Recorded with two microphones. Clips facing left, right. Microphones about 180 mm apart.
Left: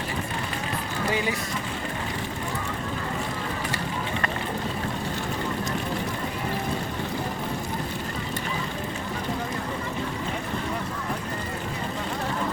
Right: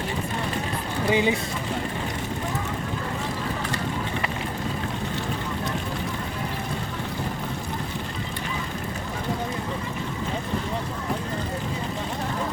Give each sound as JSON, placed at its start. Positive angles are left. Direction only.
{"t": 1.1, "sound": "speech", "side_deg": -20}